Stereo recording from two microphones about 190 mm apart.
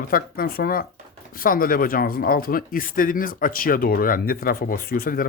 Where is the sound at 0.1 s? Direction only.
50° left (ahead or behind).